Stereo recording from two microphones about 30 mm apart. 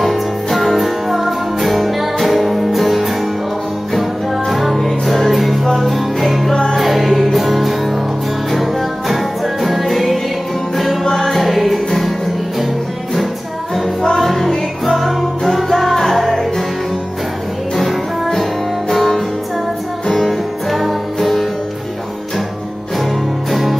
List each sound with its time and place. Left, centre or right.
0.0 s music: centre
4.5 s music: centre
5.6 s music: centre
5.9 s music: centre
6.5 s music: left
6.8 s music: centre
11.1 s music: centre
14.1 s music: centre
18.4 s music: centre
20.2 s music: centre